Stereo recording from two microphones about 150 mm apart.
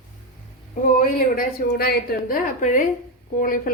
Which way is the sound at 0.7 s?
65° left (ahead or behind).